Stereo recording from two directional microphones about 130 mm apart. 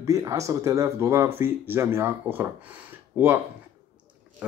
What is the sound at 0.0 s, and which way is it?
Speech, 25° right (ahead or behind).